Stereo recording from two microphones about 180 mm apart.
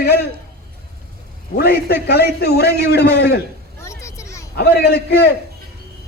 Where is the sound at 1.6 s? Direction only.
60° left (ahead or behind).